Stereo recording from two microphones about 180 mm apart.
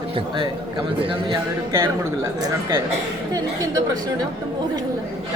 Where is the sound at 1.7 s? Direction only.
15° right (ahead or behind).